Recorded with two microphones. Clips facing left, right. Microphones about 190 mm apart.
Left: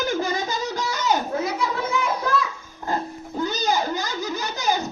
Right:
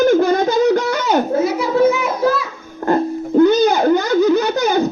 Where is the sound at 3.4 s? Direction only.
60° right (ahead or behind).